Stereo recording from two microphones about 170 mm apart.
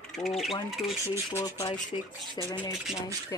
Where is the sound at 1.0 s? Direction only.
20° left (ahead or behind).